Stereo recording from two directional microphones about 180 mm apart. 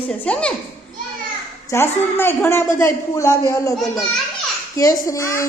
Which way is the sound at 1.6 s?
15° left (ahead or behind).